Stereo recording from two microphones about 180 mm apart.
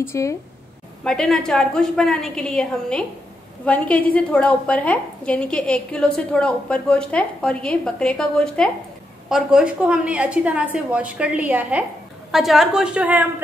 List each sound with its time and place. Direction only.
0.0 s a woman's voice: 15° left (ahead or behind)
1.0 s a woman's voice: 5° left (ahead or behind)